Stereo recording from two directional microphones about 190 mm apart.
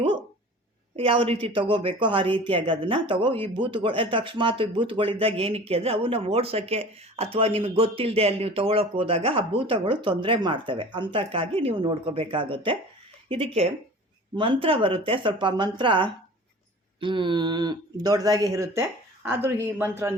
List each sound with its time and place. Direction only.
0.9 s a woman's voice: 30° right (ahead or behind); by 20.1 s 15° right (ahead or behind)